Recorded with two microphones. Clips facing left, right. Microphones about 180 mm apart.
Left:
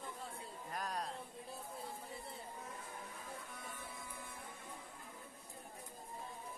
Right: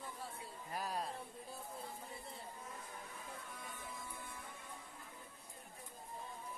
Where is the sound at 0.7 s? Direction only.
5° right (ahead or behind).